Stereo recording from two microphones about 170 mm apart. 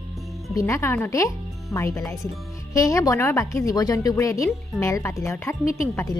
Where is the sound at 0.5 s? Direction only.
15° left (ahead or behind).